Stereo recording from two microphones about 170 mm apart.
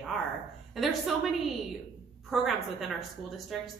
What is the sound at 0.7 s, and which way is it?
A woman's voice, centre (ahead or behind).